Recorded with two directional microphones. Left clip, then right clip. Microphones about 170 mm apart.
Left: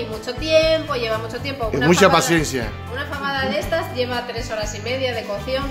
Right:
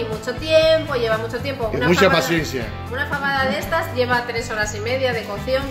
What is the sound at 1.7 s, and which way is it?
Speech, 25° left (ahead or behind).